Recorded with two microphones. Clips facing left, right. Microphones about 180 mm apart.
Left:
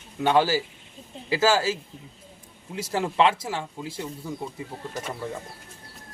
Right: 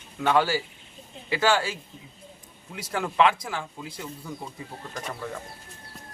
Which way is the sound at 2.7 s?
25° left (ahead or behind).